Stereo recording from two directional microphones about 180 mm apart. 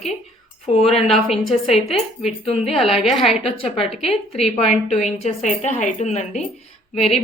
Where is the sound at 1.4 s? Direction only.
35° left (ahead or behind).